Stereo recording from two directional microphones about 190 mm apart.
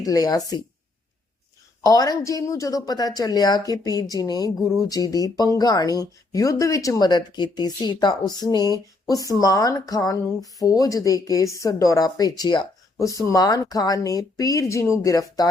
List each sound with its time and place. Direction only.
0.0 s speech: 20° left (ahead or behind)
1.8 s speech: 20° left (ahead or behind)